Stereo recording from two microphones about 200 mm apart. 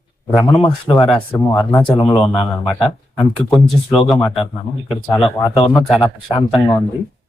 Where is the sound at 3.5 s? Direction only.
Centre (ahead or behind).